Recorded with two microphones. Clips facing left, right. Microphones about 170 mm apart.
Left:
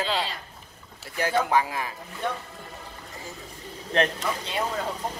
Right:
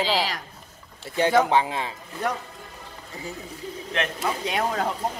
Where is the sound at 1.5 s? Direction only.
25° right (ahead or behind).